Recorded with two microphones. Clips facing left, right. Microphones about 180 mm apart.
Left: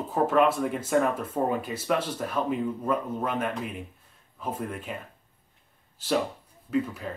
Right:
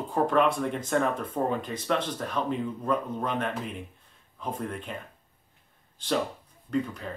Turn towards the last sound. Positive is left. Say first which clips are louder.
# left 2 dB
turn(degrees=5)  # may be behind; listen again after turning